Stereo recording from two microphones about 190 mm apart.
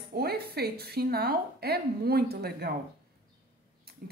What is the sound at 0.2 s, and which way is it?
Speech, 55° right (ahead or behind).